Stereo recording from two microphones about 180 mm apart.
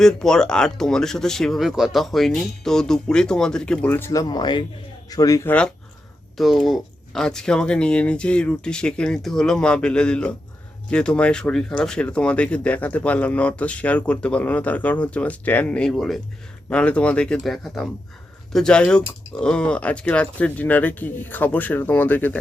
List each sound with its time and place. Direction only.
0.0 s speech: 5° left (ahead or behind)